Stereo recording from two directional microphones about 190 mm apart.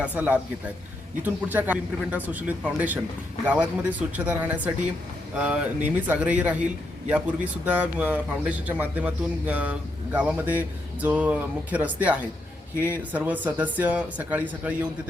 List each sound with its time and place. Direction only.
0.0 s a man's voice: 10° right (ahead or behind)